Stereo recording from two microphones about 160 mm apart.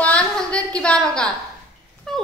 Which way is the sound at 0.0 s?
5° left (ahead or behind).